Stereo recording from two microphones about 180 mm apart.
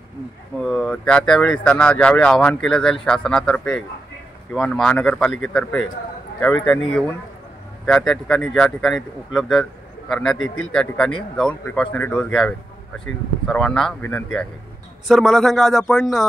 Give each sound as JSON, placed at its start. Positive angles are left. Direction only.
{"t": 0.6, "sound": "speech", "side_deg": 0}